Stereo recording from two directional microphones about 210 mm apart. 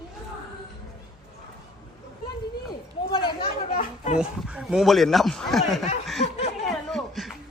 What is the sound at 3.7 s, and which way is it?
Chatter, 30° left (ahead or behind).